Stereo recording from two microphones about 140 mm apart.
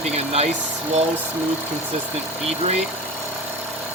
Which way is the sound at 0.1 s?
50° right (ahead or behind).